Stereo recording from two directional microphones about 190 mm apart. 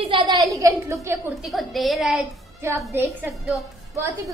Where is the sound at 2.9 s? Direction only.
15° right (ahead or behind).